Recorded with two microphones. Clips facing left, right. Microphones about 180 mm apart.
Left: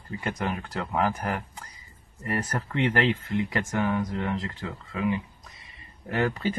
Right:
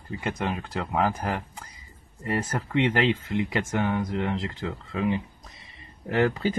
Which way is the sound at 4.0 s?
20° right (ahead or behind).